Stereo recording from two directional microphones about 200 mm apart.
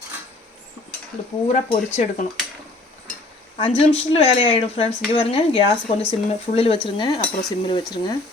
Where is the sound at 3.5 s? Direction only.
30° left (ahead or behind).